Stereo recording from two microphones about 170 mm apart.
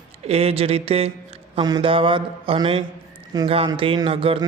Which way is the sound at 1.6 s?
25° right (ahead or behind).